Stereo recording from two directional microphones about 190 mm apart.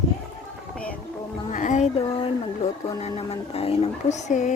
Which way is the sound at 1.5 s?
40° left (ahead or behind).